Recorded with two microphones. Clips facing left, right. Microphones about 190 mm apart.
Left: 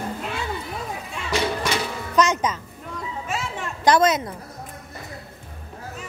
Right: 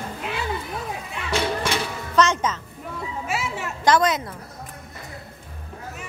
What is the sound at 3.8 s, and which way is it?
Speech, 20° left (ahead or behind).